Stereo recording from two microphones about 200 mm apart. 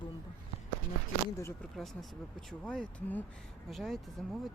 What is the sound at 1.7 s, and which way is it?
Speech, centre (ahead or behind).